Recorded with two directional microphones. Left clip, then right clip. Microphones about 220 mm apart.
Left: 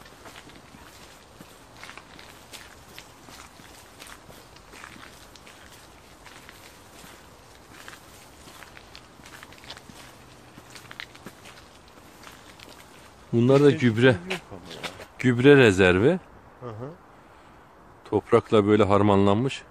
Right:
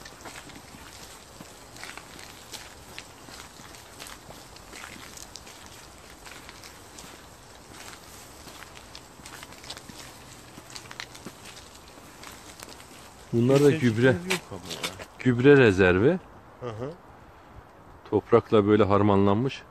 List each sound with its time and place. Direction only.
13.4 s speech: 40° left (ahead or behind)
14.2 s speech: 25° right (ahead or behind)
15.1 s a man's voice: 30° left (ahead or behind)
18.1 s a man's voice: 25° left (ahead or behind)